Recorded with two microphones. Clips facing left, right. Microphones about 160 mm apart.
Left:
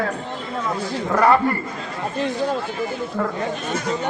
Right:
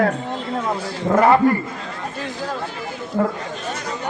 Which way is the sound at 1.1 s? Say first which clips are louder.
Right 2 dB; 20° right (ahead or behind).